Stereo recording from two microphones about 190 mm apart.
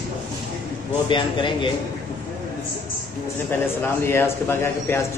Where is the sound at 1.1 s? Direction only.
25° left (ahead or behind).